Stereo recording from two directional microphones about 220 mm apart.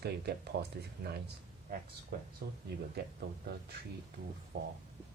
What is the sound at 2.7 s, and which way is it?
Speech, 50° right (ahead or behind).